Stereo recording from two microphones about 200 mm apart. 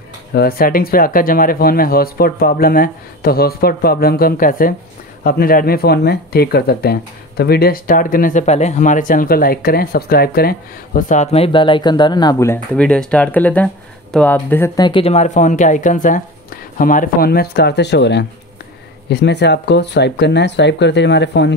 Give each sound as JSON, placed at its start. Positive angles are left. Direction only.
{"t": 0.3, "sound": "speech", "side_deg": 50}
{"t": 11.0, "sound": "speech", "side_deg": 35}
{"t": 12.7, "sound": "speech", "side_deg": 5}
{"t": 14.9, "sound": "speech", "side_deg": 30}